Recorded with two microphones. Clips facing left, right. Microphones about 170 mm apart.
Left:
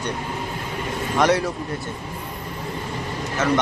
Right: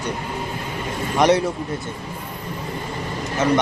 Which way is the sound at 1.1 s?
20° right (ahead or behind).